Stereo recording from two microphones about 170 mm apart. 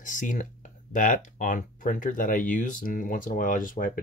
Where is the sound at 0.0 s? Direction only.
50° left (ahead or behind).